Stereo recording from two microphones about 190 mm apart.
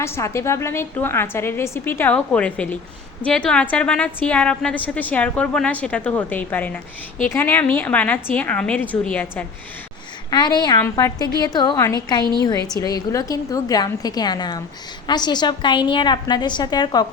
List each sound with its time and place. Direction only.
0.0 s a woman's voice: 15° left (ahead or behind)
10.2 s a woman's voice: 20° left (ahead or behind)